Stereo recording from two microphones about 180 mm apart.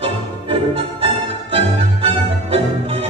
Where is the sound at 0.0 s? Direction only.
30° right (ahead or behind).